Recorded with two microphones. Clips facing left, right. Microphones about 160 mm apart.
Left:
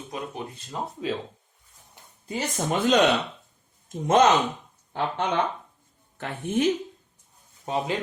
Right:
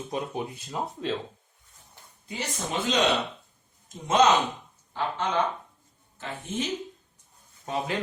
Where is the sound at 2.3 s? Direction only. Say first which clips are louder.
Left 6 dB; 50° left (ahead or behind).